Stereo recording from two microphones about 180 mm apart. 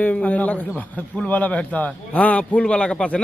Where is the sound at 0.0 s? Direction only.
10° left (ahead or behind).